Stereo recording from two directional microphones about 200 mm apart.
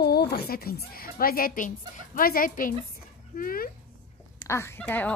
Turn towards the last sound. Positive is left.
turn(degrees=5)  # may be behind; listen again after turning